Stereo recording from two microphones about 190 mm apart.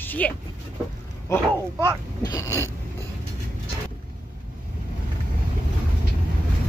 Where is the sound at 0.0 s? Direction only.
10° left (ahead or behind).